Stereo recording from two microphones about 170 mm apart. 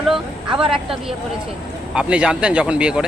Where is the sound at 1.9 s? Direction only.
5° right (ahead or behind).